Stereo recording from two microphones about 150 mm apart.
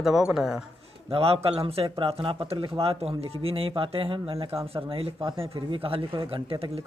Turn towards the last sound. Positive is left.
turn(degrees=-35)  # may be behind; listen again after turning